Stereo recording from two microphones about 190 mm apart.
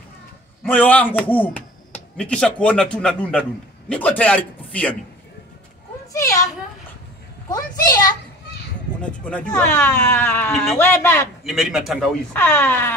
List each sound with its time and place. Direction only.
0.7 s speech: 10° left (ahead or behind)
6.1 s a woman's voice: 15° left (ahead or behind)
9.0 s speech: 5° left (ahead or behind)
11.4 s a man's voice: centre (ahead or behind)
12.4 s speech: 10° left (ahead or behind)